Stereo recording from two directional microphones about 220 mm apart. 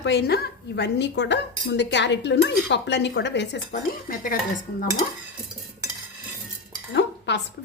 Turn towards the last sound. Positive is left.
turn(degrees=50)  # may be behind; listen again after turning